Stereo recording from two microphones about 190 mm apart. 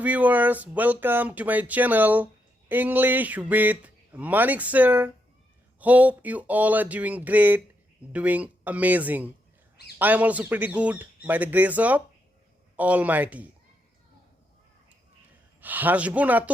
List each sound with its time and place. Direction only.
0.0 s a man's voice: 10° right (ahead or behind)
15.6 s a man's voice: 10° right (ahead or behind)